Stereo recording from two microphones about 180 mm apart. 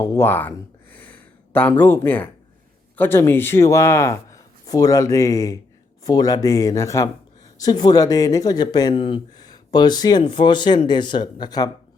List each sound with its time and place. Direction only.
0.0 s speech: 15° left (ahead or behind)